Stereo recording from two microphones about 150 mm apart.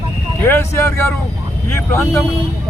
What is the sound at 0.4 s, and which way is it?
Speech, 15° left (ahead or behind).